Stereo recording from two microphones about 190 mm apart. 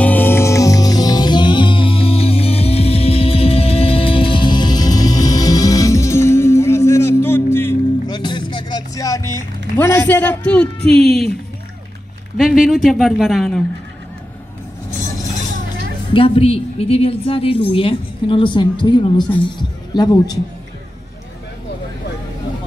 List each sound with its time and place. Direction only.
0.0 s music: 10° left (ahead or behind)
10.9 s a woman's voice: centre (ahead or behind)
12.4 s a woman's voice: centre (ahead or behind)
16.1 s a woman's voice: 30° left (ahead or behind)